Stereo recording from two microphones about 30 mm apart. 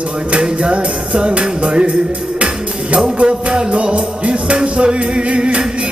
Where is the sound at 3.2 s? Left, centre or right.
Right.